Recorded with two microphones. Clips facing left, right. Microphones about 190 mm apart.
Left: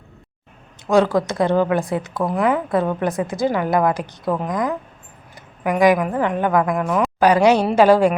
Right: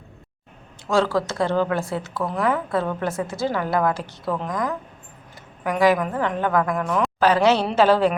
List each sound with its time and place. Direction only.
0.9 s a woman's voice: 15° left (ahead or behind)